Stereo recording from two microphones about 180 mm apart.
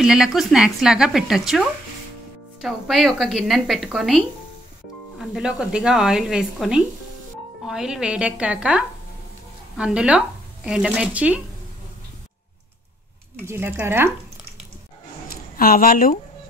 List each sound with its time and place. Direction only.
0.0 s speech: 5° right (ahead or behind)
5.3 s speech: 5° right (ahead or behind)
13.5 s speech: 10° right (ahead or behind)
15.2 s a sound: 55° left (ahead or behind)